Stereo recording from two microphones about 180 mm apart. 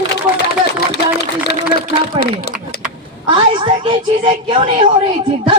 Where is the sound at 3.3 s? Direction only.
25° right (ahead or behind).